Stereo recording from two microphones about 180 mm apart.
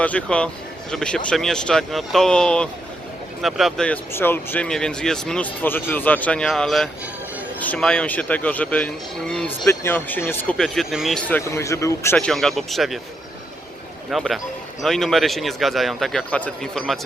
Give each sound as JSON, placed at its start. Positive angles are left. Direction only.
{"t": 0.0, "sound": "speech", "side_deg": 5}
{"t": 11.3, "sound": "speech", "side_deg": 15}
{"t": 12.1, "sound": "speech", "side_deg": 5}
{"t": 14.1, "sound": "speech", "side_deg": 0}